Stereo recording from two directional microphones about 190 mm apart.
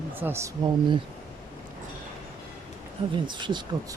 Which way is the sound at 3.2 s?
25° right (ahead or behind).